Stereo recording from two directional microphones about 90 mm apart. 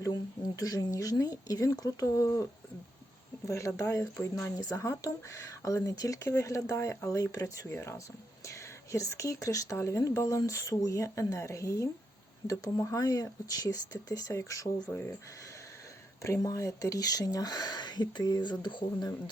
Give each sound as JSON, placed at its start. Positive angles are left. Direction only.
{"t": 0.1, "sound": "speech", "side_deg": 40}
{"t": 16.2, "sound": "speech", "side_deg": 35}